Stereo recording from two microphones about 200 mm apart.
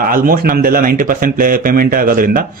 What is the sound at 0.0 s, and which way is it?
Speech, 45° right (ahead or behind).